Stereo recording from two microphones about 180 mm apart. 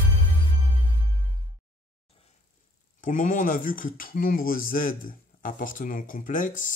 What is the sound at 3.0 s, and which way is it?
Speech, 45° left (ahead or behind).